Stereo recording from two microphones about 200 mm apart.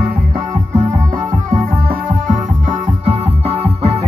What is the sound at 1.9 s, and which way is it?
Music, 40° right (ahead or behind).